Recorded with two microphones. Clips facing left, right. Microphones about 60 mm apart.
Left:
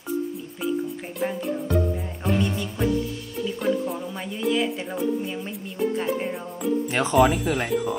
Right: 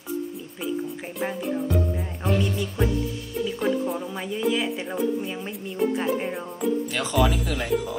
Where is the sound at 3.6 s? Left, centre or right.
Centre.